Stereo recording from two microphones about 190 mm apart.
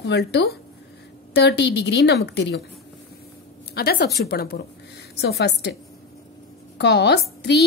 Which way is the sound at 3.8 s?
55° left (ahead or behind).